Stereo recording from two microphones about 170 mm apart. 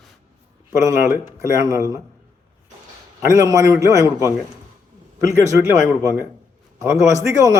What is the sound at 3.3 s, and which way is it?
Speech, 20° right (ahead or behind).